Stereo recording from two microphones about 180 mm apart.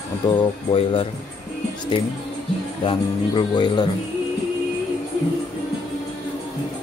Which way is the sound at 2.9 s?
25° left (ahead or behind).